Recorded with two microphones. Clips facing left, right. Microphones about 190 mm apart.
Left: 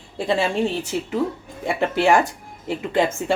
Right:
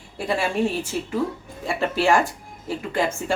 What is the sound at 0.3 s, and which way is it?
Speech, 20° left (ahead or behind).